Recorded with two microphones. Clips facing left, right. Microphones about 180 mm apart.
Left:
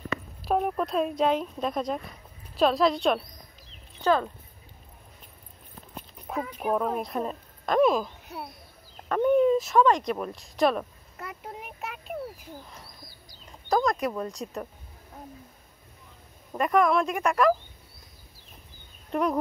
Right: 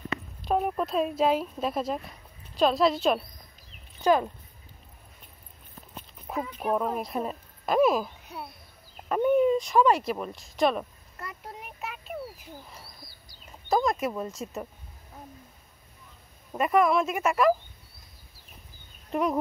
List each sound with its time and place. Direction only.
0.4 s speech: centre (ahead or behind)
4.0 s speech: 15° right (ahead or behind)
6.4 s a woman's voice: centre (ahead or behind)
9.8 s a sound: 5° right (ahead or behind)
13.5 s speech: centre (ahead or behind)
16.5 s speech: 5° right (ahead or behind)
19.0 s speech: centre (ahead or behind)